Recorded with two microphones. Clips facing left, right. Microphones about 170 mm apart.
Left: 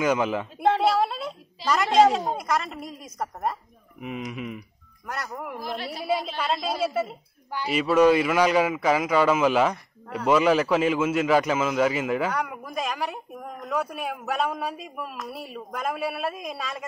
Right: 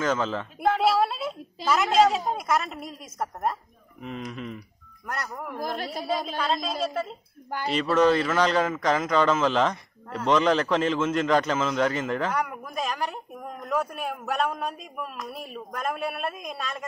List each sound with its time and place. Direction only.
0.0 s a woman's voice: 10° left (ahead or behind)
0.8 s a sound: centre (ahead or behind)
2.1 s a man's voice: centre (ahead or behind)
5.6 s a woman's voice: 45° right (ahead or behind)
6.0 s a woman's voice: 5° left (ahead or behind)